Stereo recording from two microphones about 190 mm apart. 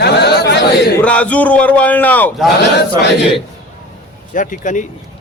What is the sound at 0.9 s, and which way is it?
Speech, 5° left (ahead or behind).